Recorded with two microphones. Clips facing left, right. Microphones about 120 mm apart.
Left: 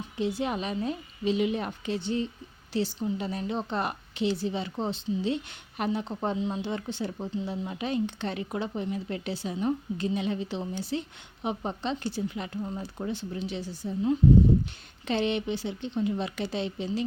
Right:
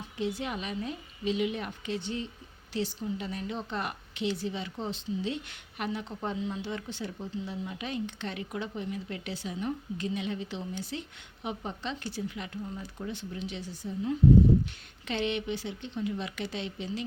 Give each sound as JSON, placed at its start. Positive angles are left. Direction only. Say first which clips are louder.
{"t": 0.2, "sound": "a woman's voice", "louder": "left 4 dB", "side_deg": 30}